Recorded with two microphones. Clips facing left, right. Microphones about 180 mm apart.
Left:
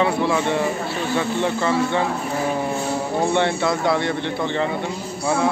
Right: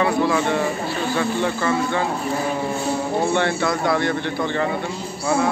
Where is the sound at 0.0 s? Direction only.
25° left (ahead or behind).